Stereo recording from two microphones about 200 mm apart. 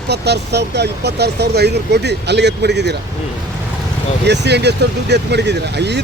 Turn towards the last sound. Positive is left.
turn(degrees=-55)  # may be behind; listen again after turning